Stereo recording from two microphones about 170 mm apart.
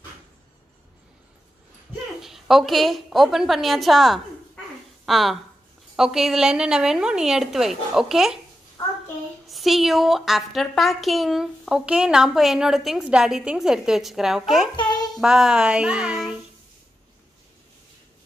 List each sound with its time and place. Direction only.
2.2 s a woman's voice: centre (ahead or behind)
9.5 s a woman's voice: centre (ahead or behind)
14.8 s a child's voice: 25° left (ahead or behind)
15.1 s a woman's voice: 5° right (ahead or behind)